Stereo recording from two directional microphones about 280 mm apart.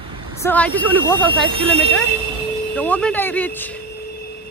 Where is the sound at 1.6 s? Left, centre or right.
Right.